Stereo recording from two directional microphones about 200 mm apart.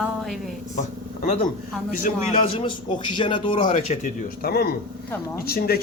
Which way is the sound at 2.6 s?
25° left (ahead or behind).